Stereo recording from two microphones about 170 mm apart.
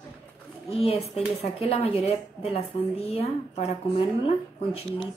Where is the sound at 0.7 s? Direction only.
35° left (ahead or behind).